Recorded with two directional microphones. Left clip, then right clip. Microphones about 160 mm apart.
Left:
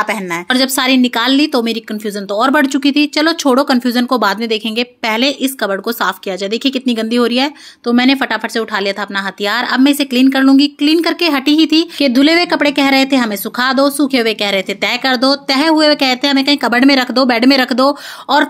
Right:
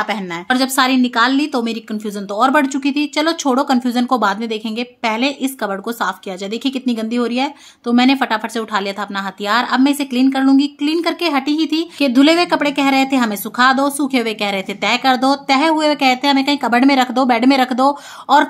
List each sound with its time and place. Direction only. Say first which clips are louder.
0.0 s a woman's voice: left 4 dB; 15° left (ahead or behind)